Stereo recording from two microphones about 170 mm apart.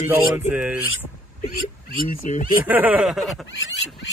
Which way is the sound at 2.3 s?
45° left (ahead or behind).